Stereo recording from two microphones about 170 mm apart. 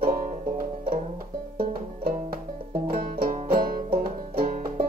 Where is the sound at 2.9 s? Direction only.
60° right (ahead or behind).